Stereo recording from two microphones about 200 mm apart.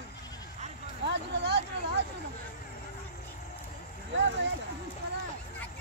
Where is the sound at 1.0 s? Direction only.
60° right (ahead or behind).